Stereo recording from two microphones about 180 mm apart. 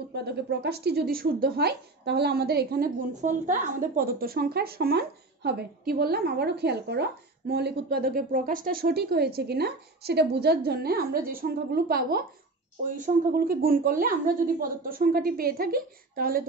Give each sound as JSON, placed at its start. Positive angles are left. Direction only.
{"t": 0.1, "sound": "a woman's voice", "side_deg": -65}
{"t": 3.2, "sound": "a woman's voice", "side_deg": -45}